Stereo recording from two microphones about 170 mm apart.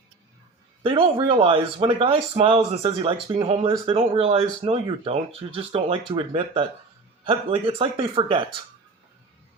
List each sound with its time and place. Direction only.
0.8 s speech: 30° right (ahead or behind)